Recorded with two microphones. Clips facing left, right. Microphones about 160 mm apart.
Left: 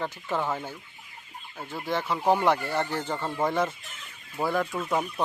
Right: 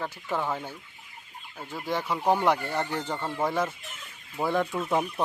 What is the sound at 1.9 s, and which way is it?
Speech, 10° right (ahead or behind).